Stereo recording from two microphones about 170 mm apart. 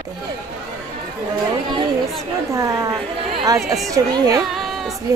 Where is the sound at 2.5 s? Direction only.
20° right (ahead or behind).